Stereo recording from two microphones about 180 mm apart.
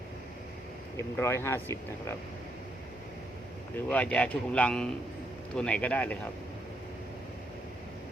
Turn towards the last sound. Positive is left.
turn(degrees=5)  # may be behind; listen again after turning